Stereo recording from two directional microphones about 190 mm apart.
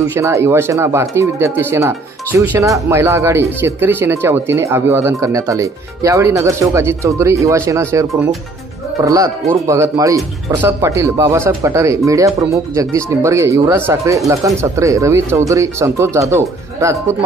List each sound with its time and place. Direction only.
0.1 s speech: 15° right (ahead or behind)